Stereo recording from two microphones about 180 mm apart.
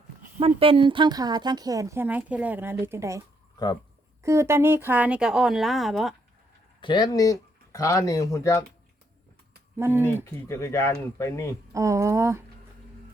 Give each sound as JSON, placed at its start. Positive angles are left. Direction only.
{"t": 0.3, "sound": "speech", "side_deg": -30}
{"t": 6.8, "sound": "speech", "side_deg": 25}
{"t": 9.7, "sound": "speech", "side_deg": -15}
{"t": 10.5, "sound": "speech", "side_deg": 15}
{"t": 11.7, "sound": "speech", "side_deg": -15}